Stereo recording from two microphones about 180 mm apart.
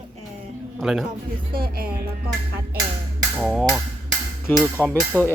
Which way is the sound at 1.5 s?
55° right (ahead or behind).